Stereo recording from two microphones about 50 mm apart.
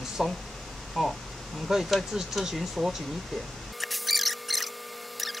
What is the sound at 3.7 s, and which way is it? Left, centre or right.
Mouse, centre.